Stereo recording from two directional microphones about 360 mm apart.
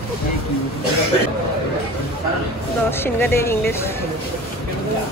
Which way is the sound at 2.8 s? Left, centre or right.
Centre.